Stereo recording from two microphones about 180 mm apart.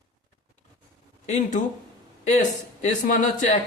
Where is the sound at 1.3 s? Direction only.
45° left (ahead or behind).